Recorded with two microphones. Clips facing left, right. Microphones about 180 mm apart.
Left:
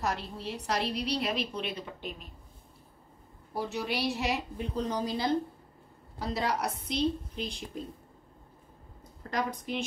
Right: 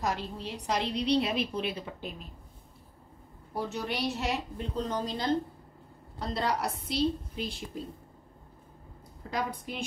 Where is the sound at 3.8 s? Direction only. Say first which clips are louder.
Left 2 dB; 5° left (ahead or behind).